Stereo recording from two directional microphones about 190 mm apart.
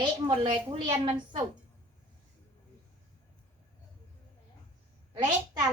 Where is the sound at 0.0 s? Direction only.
30° right (ahead or behind).